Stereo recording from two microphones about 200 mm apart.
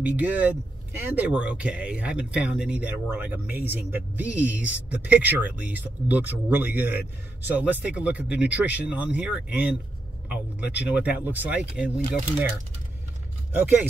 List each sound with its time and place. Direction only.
0.0 s speech: 5° right (ahead or behind)